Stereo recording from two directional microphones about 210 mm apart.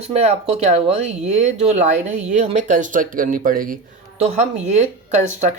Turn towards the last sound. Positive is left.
turn(degrees=-35)  # may be behind; listen again after turning